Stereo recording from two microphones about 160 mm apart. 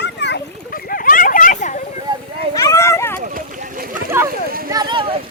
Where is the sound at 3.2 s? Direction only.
60° right (ahead or behind).